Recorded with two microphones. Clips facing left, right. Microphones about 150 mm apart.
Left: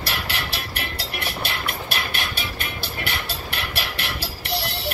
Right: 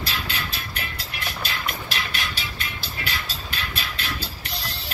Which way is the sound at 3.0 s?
65° left (ahead or behind).